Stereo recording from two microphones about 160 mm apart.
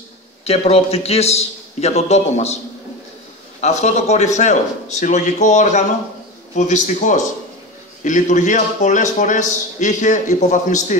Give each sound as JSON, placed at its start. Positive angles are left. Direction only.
{"t": 0.5, "sound": "a man's voice", "side_deg": 40}
{"t": 3.6, "sound": "a man's voice", "side_deg": 45}